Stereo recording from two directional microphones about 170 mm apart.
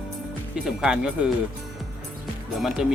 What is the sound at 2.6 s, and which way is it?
Speech, centre (ahead or behind).